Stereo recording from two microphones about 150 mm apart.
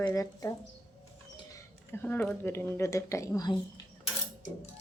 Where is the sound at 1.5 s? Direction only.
10° left (ahead or behind).